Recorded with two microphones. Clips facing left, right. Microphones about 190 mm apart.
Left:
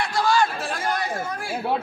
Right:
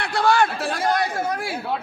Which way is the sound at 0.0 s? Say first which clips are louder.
Right 2 dB; 60° right (ahead or behind).